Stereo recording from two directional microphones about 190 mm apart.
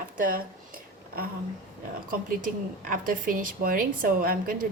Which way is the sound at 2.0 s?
45° right (ahead or behind).